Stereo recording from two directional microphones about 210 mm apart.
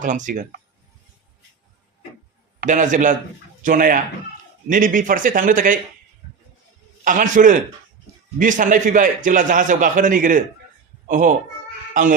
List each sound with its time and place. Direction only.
0.0 s a man's voice: 40° right (ahead or behind)
2.6 s a man's voice: 35° right (ahead or behind)
7.0 s a man's voice: 40° right (ahead or behind)